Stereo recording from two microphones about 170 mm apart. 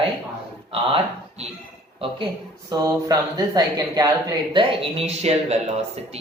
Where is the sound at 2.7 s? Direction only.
20° right (ahead or behind).